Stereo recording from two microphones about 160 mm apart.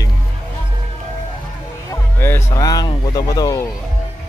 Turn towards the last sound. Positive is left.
turn(degrees=20)  # may be behind; listen again after turning